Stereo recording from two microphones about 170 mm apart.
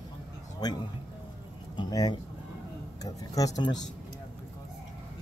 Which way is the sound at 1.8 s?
25° left (ahead or behind).